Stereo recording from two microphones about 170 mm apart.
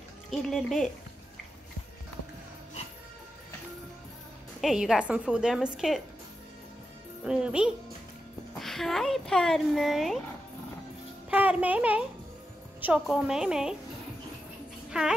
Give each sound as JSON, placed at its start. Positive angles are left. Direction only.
{"t": 0.3, "sound": "speech", "side_deg": 0}
{"t": 4.6, "sound": "speech", "side_deg": 0}
{"t": 7.2, "sound": "speech", "side_deg": -5}
{"t": 11.2, "sound": "speech", "side_deg": -10}
{"t": 14.9, "sound": "speech", "side_deg": -5}